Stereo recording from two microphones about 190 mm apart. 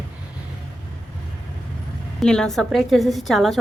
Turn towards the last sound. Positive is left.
turn(degrees=0)  # may be behind; listen again after turning